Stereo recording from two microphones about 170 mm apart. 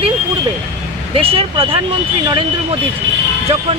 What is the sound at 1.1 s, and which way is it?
Speech, 35° right (ahead or behind).